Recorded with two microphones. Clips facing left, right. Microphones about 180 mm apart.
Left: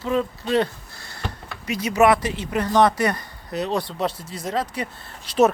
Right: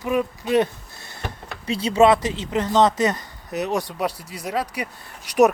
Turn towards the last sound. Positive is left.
turn(degrees=-15)  # may be behind; listen again after turning